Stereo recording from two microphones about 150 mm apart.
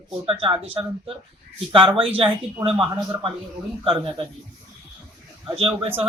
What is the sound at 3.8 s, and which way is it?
Speech, 35° right (ahead or behind).